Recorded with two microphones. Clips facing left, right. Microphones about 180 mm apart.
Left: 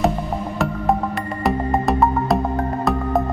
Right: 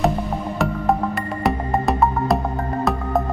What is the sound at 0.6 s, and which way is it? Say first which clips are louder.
Music: even; centre (ahead or behind).